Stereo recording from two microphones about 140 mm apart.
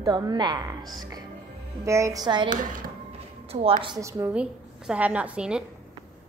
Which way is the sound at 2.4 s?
75° right (ahead or behind).